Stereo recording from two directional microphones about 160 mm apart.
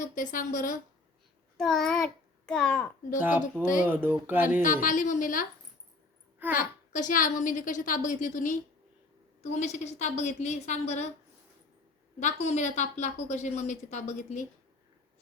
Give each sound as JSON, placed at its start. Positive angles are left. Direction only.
{"t": 0.0, "sound": "a woman's voice", "side_deg": 55}
{"t": 1.5, "sound": "a child's voice", "side_deg": 0}
{"t": 3.2, "sound": "speech", "side_deg": -10}
{"t": 4.6, "sound": "a woman's voice", "side_deg": 55}
{"t": 6.6, "sound": "a woman's voice", "side_deg": 55}
{"t": 12.2, "sound": "a woman's voice", "side_deg": 45}